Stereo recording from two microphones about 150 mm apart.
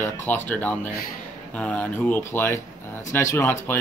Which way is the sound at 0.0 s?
10° left (ahead or behind).